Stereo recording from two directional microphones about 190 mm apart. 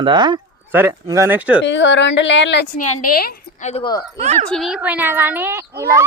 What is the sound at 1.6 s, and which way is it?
A woman's voice, 70° left (ahead or behind).